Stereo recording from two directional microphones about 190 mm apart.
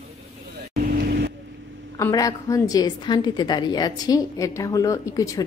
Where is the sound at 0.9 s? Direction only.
55° right (ahead or behind).